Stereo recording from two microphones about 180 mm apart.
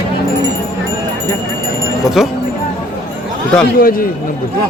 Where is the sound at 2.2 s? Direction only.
Centre (ahead or behind).